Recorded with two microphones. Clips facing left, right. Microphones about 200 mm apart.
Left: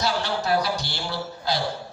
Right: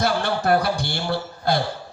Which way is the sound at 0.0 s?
55° right (ahead or behind).